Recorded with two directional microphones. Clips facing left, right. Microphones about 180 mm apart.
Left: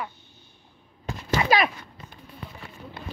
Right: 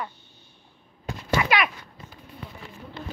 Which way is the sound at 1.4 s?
35° left (ahead or behind).